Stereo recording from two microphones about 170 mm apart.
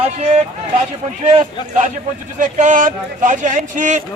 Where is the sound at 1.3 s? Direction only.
40° right (ahead or behind).